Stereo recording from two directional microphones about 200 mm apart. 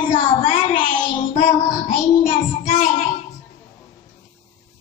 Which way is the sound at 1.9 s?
45° left (ahead or behind).